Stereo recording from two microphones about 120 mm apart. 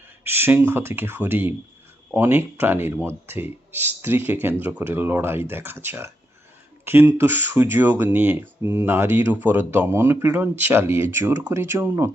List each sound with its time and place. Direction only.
0.3 s speech: 20° right (ahead or behind)